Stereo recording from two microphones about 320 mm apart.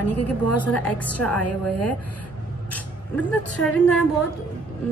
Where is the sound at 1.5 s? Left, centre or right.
Left.